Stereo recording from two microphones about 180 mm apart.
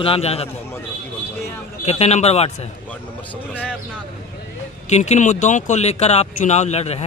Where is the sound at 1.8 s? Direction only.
35° left (ahead or behind).